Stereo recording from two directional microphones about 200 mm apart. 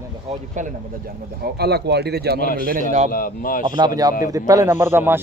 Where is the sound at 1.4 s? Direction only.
55° right (ahead or behind).